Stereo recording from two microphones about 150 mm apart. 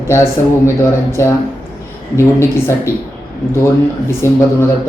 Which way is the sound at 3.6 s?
15° left (ahead or behind).